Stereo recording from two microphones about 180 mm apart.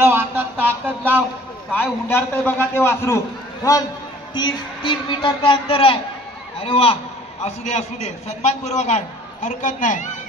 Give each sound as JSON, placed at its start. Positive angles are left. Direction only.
{"t": 0.0, "sound": "a sound", "side_deg": -10}
{"t": 1.7, "sound": "a man's voice", "side_deg": 10}
{"t": 4.3, "sound": "a man's voice", "side_deg": 25}